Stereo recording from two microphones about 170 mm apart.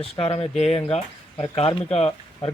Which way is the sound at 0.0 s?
35° left (ahead or behind).